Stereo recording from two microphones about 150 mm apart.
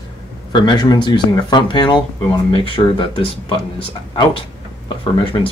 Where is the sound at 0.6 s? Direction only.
30° left (ahead or behind).